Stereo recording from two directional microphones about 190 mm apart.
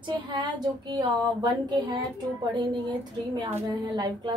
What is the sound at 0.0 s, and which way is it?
Speech, 25° right (ahead or behind).